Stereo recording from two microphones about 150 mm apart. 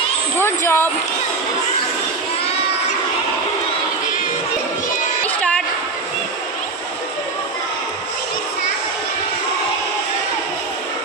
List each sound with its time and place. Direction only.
0.4 s speech: 15° left (ahead or behind)
5.2 s music: 10° left (ahead or behind)